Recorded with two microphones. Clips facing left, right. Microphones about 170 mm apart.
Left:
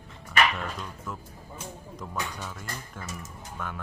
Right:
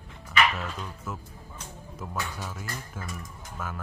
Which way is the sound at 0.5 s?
5° right (ahead or behind).